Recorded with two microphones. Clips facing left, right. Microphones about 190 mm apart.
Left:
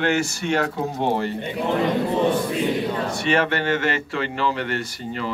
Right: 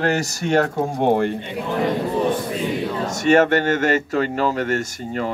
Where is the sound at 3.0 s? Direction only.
45° right (ahead or behind).